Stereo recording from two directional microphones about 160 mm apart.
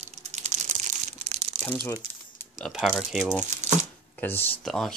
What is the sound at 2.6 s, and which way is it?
Speech, centre (ahead or behind).